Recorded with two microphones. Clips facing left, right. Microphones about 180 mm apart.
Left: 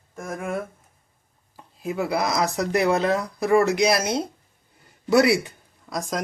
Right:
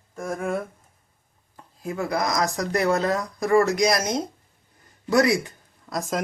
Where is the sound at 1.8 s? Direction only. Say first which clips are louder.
Left 2 dB; 20° left (ahead or behind).